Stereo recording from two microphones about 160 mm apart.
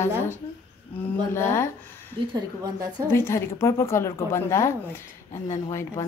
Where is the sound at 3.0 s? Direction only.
15° left (ahead or behind).